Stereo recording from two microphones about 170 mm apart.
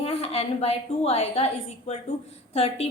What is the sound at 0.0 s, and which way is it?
A woman's voice, 35° left (ahead or behind).